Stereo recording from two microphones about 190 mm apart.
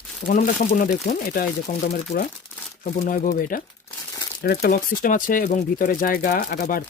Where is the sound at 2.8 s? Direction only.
45° left (ahead or behind).